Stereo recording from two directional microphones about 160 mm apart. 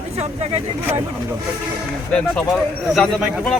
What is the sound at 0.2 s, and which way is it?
Speech, 40° right (ahead or behind).